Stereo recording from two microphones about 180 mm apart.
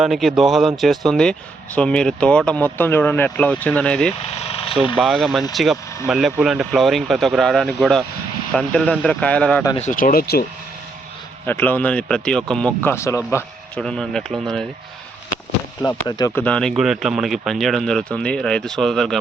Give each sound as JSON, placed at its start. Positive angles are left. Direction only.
{"t": 0.0, "sound": "speech", "side_deg": 0}
{"t": 4.4, "sound": "speech", "side_deg": 35}
{"t": 4.9, "sound": "speech", "side_deg": 0}
{"t": 9.7, "sound": "speech", "side_deg": 45}
{"t": 11.4, "sound": "speech", "side_deg": 10}
{"t": 13.8, "sound": "speech", "side_deg": 5}
{"t": 15.8, "sound": "speech", "side_deg": 20}
{"t": 16.3, "sound": "speech", "side_deg": 5}